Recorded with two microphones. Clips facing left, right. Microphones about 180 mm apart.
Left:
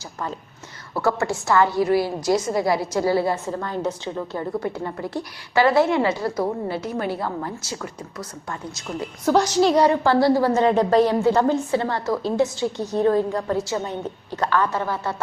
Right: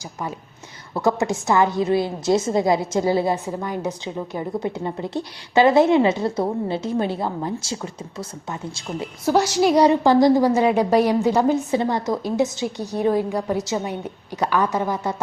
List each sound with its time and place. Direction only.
0.9 s a woman's voice: 20° right (ahead or behind)
9.2 s a woman's voice: 10° right (ahead or behind)